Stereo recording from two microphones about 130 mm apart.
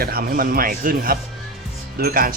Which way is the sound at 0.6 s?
90° right.